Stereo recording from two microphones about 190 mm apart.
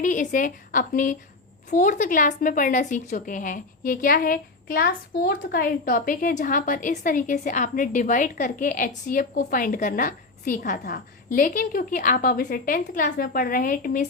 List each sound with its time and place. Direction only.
0.0 s a woman's voice: 40° left (ahead or behind)